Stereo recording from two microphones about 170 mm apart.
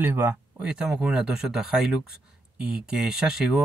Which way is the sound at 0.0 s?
10° right (ahead or behind).